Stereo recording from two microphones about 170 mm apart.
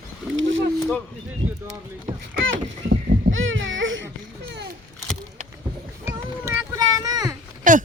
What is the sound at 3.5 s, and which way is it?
Baby cry, 90° right.